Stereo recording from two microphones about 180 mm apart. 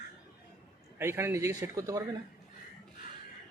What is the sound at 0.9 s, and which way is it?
Speech, 15° right (ahead or behind).